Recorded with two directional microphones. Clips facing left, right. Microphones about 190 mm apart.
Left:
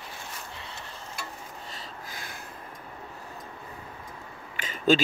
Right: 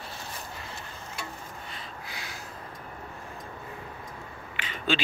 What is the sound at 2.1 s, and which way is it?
Snort, 50° left (ahead or behind).